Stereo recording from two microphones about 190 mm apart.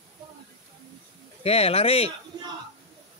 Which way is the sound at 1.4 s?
30° left (ahead or behind).